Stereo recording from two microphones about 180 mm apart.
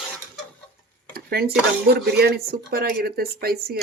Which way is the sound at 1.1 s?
60° right (ahead or behind).